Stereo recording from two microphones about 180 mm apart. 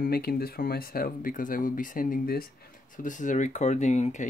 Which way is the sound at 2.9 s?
45° left (ahead or behind).